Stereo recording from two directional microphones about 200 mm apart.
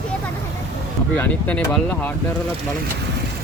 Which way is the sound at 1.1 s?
10° left (ahead or behind).